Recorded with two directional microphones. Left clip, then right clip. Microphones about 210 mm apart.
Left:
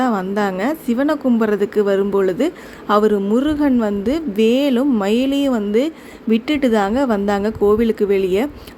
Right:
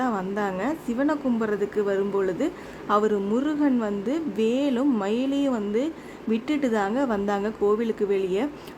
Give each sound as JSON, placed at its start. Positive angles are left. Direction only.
{"t": 0.0, "sound": "a woman's voice", "side_deg": 15}